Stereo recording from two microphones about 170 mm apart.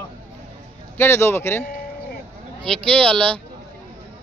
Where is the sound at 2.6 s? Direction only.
5° left (ahead or behind).